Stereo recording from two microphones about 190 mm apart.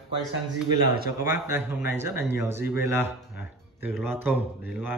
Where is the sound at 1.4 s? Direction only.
15° right (ahead or behind).